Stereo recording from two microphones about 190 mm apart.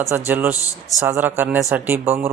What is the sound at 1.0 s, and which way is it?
Speech, 10° right (ahead or behind).